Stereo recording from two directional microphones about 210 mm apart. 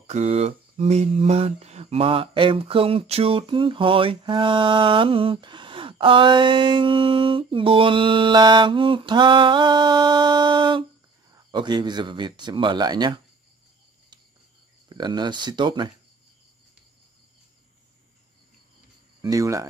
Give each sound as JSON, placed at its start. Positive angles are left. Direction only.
{"t": 0.0, "sound": "speech", "side_deg": -30}
{"t": 14.9, "sound": "speech", "side_deg": -20}
{"t": 19.2, "sound": "speech", "side_deg": -15}